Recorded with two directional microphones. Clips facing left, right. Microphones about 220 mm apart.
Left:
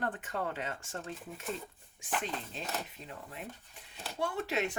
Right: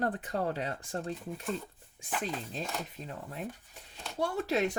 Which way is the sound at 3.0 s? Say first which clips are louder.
Right 5 dB; 40° right (ahead or behind).